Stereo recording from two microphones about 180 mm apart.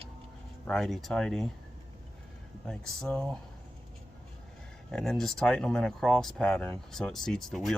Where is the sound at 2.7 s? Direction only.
5° left (ahead or behind).